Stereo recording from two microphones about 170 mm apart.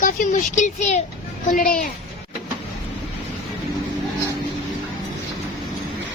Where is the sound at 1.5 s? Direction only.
55° left (ahead or behind).